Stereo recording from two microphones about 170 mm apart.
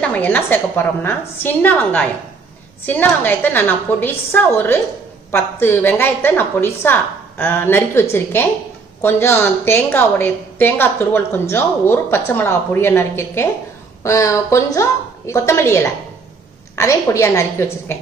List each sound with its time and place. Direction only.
0.0 s a woman's voice: 10° left (ahead or behind)